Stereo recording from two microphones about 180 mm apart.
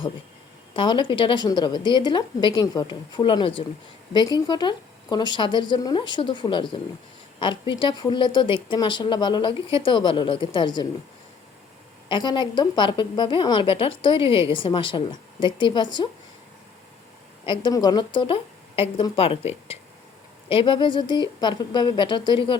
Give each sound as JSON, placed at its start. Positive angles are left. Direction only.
{"t": 0.8, "sound": "speech", "side_deg": 25}
{"t": 12.0, "sound": "speech", "side_deg": 25}
{"t": 17.4, "sound": "speech", "side_deg": 25}